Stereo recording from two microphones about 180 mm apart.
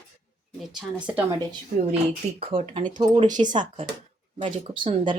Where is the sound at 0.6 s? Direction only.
5° right (ahead or behind).